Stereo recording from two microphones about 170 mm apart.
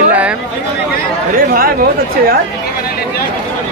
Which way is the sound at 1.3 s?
60° right (ahead or behind).